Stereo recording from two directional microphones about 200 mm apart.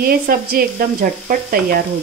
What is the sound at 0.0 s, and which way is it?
Frying, 50° right (ahead or behind).